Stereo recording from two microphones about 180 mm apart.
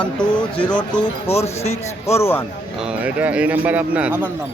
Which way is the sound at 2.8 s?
10° right (ahead or behind).